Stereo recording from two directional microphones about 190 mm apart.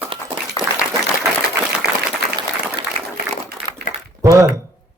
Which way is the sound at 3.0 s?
35° right (ahead or behind).